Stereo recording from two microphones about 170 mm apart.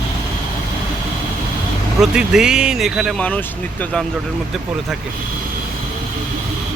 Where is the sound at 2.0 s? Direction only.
5° right (ahead or behind).